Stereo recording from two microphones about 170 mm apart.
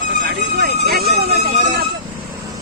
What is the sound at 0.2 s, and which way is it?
Music, 55° right (ahead or behind).